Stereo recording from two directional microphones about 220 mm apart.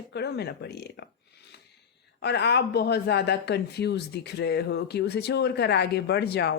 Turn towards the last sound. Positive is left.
turn(degrees=45)  # may be behind; listen again after turning